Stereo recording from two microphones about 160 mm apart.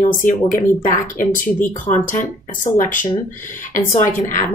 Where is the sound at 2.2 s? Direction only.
55° left (ahead or behind).